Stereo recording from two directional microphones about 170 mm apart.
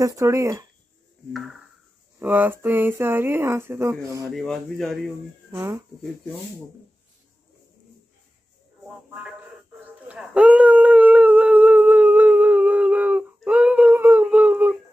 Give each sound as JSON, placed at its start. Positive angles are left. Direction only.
{"t": 0.0, "sound": "speech", "side_deg": -20}
{"t": 1.3, "sound": "speech", "side_deg": 0}
{"t": 2.1, "sound": "speech", "side_deg": -10}
{"t": 4.4, "sound": "speech", "side_deg": 0}
{"t": 5.5, "sound": "speech", "side_deg": -15}
{"t": 8.8, "sound": "a sound", "side_deg": -5}